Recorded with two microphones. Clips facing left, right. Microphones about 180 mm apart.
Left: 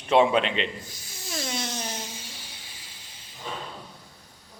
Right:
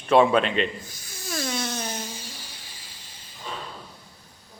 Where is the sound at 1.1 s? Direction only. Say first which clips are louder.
Right 3 dB; 25° left (ahead or behind).